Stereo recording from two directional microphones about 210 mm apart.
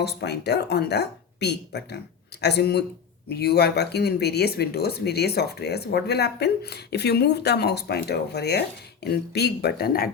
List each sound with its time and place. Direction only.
0.0 s speech: 50° left (ahead or behind)